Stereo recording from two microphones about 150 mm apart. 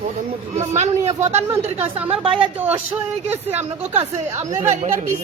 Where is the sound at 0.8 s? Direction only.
50° right (ahead or behind).